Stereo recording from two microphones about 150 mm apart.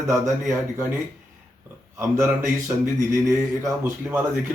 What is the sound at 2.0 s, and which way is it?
Speech, 15° right (ahead or behind).